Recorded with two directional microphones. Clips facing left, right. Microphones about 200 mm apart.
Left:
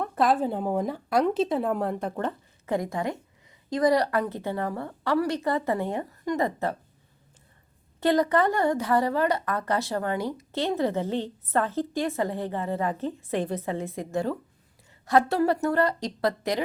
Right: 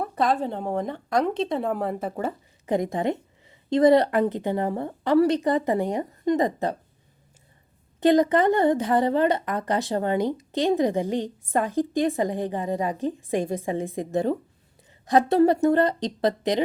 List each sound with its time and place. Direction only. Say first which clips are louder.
0.0 s a woman's voice: even; centre (ahead or behind); by 6.7 s 20° right (ahead or behind)
8.0 s a woman's voice: right 4 dB; 20° right (ahead or behind)